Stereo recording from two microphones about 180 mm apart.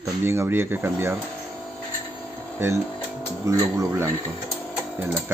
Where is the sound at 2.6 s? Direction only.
15° right (ahead or behind).